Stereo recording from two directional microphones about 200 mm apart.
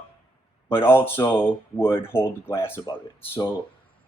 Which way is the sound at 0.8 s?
10° left (ahead or behind).